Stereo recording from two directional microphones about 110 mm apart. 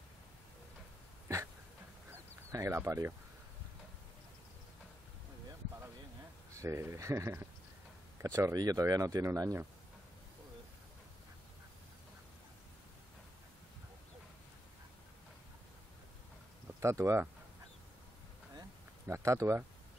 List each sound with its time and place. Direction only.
2.5 s speech: 25° right (ahead or behind)
6.5 s speech: 25° right (ahead or behind)
16.8 s speech: 25° right (ahead or behind)
19.0 s speech: 25° right (ahead or behind)